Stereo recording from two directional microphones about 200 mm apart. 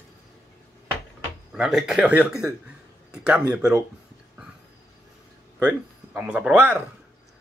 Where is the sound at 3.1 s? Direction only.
5° right (ahead or behind).